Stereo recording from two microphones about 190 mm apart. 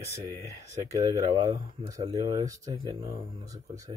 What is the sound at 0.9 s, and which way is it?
Speech, 20° right (ahead or behind).